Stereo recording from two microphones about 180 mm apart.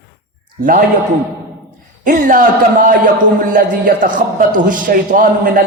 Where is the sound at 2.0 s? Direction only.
50° right (ahead or behind).